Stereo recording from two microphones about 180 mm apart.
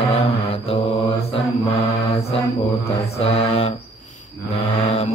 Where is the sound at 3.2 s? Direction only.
35° left (ahead or behind).